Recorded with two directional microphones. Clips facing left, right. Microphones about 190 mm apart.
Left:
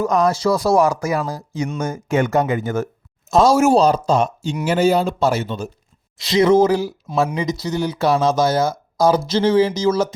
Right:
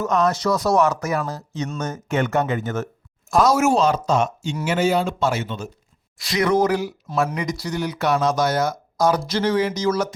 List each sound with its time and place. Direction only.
0.0 s speech: 15° left (ahead or behind)
0.4 s speech: 30° left (ahead or behind)
0.8 s speech: 10° left (ahead or behind)
3.3 s speech: 30° left (ahead or behind)
6.1 s speech: 25° left (ahead or behind)